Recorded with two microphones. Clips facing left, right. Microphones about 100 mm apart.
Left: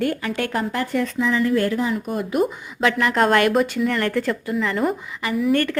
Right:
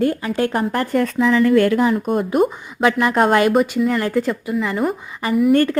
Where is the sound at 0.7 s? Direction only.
50° right (ahead or behind); by 1.9 s 70° right (ahead or behind).